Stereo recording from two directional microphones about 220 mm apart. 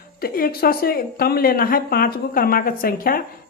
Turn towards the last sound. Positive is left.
turn(degrees=40)  # may be behind; listen again after turning